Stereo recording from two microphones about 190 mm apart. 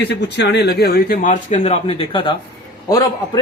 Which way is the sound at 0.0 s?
60° left (ahead or behind).